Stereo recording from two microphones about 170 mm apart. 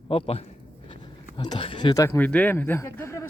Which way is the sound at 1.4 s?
25° left (ahead or behind).